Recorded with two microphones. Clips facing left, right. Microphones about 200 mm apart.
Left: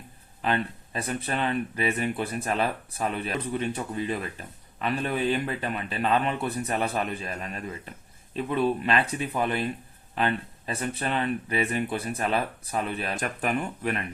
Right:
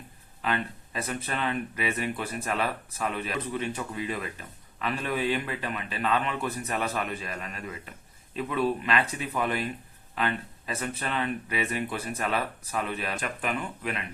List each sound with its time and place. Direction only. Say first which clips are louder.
0.4 s a man's voice: left 3 dB; 35° left (ahead or behind)